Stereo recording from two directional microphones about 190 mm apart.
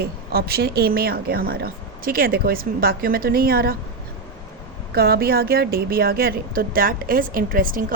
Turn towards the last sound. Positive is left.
turn(degrees=-45)  # may be behind; listen again after turning